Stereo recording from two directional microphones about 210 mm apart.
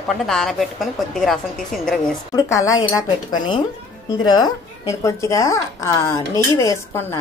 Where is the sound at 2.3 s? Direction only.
15° left (ahead or behind).